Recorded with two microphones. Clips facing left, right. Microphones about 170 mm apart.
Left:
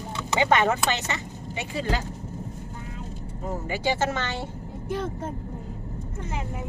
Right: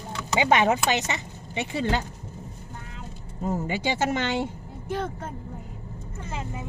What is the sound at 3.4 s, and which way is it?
Speech, 20° right (ahead or behind).